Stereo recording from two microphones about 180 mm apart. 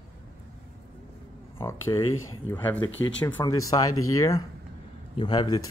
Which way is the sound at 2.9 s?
90° left.